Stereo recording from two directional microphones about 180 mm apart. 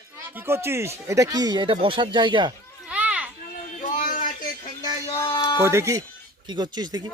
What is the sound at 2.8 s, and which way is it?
Children playing, 5° right (ahead or behind).